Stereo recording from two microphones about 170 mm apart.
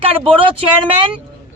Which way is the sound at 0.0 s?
30° right (ahead or behind).